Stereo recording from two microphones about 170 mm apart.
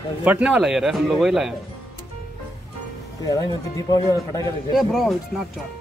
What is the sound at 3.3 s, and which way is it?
A man's voice, 20° left (ahead or behind).